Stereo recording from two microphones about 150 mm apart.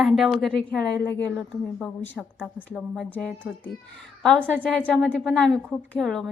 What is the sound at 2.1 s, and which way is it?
A woman's voice, centre (ahead or behind).